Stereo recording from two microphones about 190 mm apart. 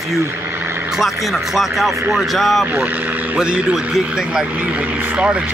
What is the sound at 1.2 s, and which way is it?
Speech, centre (ahead or behind).